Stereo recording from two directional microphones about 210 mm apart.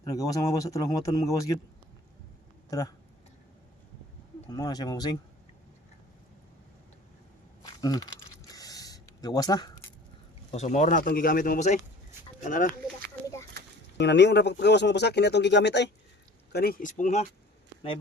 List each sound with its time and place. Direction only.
0.0 s a man's voice: 15° left (ahead or behind)
2.6 s speech: 15° left (ahead or behind)
4.4 s a man's voice: 20° left (ahead or behind)
7.6 s a sound: 20° left (ahead or behind)
10.5 s speech: 35° left (ahead or behind)
14.0 s speech: 55° left (ahead or behind); by 17.2 s 35° left (ahead or behind)